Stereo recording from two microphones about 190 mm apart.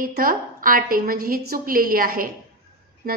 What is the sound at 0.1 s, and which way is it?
A woman's voice, 50° right (ahead or behind).